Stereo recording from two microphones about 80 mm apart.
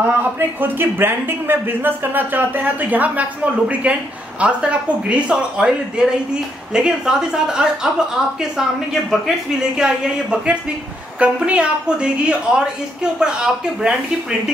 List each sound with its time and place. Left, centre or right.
0.0 s a man's voice: right; by 7.9 s centre
9.8 s a woman's voice: centre